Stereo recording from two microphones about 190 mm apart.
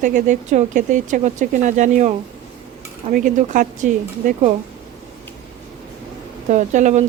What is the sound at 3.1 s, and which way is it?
Speech, 45° right (ahead or behind).